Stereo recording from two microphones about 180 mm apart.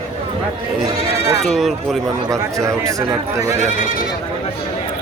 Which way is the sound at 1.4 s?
Centre (ahead or behind).